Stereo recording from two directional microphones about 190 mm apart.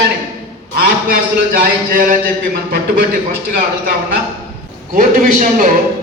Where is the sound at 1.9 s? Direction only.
45° right (ahead or behind).